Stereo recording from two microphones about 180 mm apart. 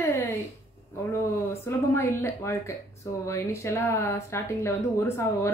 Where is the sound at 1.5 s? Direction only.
15° left (ahead or behind).